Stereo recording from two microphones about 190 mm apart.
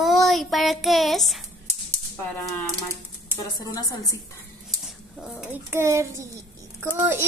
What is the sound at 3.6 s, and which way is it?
Speech, 20° left (ahead or behind).